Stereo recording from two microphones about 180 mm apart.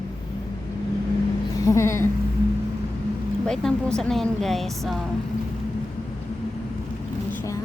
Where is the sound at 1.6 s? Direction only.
15° left (ahead or behind).